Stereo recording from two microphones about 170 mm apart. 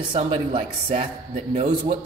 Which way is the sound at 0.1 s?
30° right (ahead or behind).